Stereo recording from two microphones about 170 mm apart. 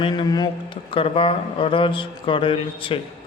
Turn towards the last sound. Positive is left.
turn(degrees=30)  # may be behind; listen again after turning